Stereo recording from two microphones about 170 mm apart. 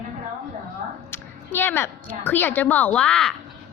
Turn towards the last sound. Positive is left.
turn(degrees=5)  # may be behind; listen again after turning